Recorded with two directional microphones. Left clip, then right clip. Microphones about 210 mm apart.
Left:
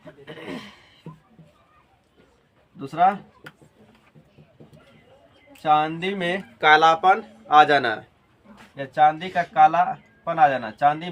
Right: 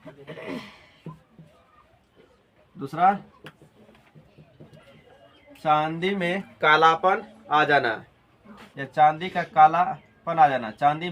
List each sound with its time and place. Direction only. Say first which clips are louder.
0.3 s a sound: even; 30° left (ahead or behind)
2.7 s speech: left 1 dB; 20° left (ahead or behind)
5.6 s speech: left 2 dB; 20° left (ahead or behind); by 8.0 s 45° left (ahead or behind)
8.7 s a man's voice: left 1 dB; 15° left (ahead or behind)